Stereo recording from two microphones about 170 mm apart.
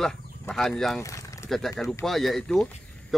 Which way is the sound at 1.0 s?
20° left (ahead or behind).